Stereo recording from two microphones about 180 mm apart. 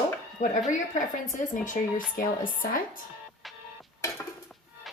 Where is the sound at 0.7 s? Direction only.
45° left (ahead or behind).